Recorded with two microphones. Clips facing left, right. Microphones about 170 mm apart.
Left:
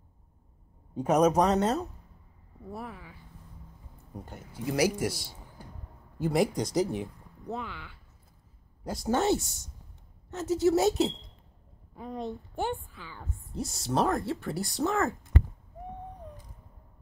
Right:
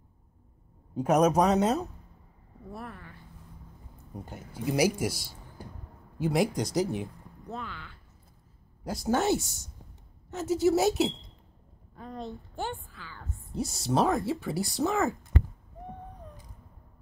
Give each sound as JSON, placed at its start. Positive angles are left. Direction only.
{"t": 0.9, "sound": "speech", "side_deg": -5}
{"t": 2.7, "sound": "speech", "side_deg": 5}
{"t": 4.6, "sound": "speech", "side_deg": -10}
{"t": 6.8, "sound": "speech", "side_deg": 30}
{"t": 7.4, "sound": "speech", "side_deg": 15}
{"t": 8.8, "sound": "speech", "side_deg": -5}
{"t": 11.9, "sound": "a woman's voice", "side_deg": 10}
{"t": 13.7, "sound": "speech", "side_deg": -5}